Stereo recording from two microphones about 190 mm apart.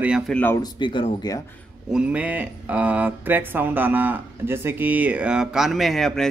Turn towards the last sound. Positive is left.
turn(degrees=0)  # may be behind; listen again after turning